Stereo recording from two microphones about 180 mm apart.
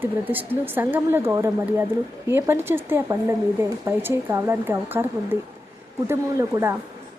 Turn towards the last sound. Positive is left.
turn(degrees=-15)  # may be behind; listen again after turning